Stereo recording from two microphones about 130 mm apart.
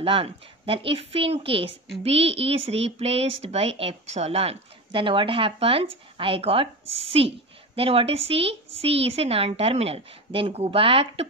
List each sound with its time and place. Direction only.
0.0 s speech: 45° right (ahead or behind)